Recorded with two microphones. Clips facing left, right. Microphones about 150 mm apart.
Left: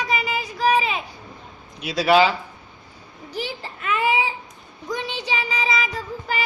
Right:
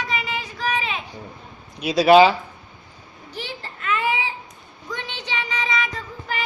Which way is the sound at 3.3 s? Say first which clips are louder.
Left 4 dB; 10° left (ahead or behind).